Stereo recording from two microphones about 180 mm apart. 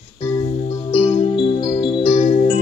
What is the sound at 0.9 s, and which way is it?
Music, 30° left (ahead or behind).